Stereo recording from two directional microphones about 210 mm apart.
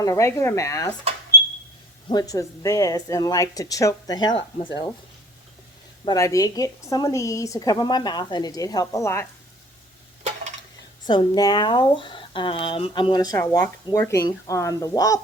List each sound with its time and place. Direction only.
0.0 s a woman's voice: 15° left (ahead or behind)
2.0 s a woman's voice: 20° left (ahead or behind)
6.1 s a woman's voice: 15° left (ahead or behind)
11.0 s speech: 20° left (ahead or behind)